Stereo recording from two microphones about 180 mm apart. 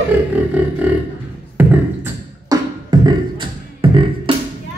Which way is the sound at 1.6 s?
10° right (ahead or behind).